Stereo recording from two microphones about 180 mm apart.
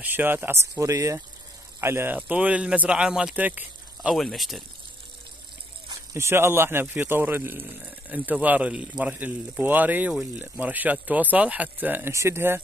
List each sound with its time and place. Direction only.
0.0 s speech: 10° right (ahead or behind)
6.1 s speech: 15° right (ahead or behind)